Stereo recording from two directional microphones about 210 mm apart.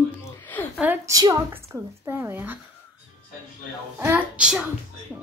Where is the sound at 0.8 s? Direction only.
10° right (ahead or behind).